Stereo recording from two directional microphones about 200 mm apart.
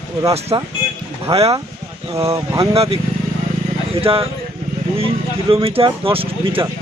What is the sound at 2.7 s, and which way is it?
Speech, 30° right (ahead or behind).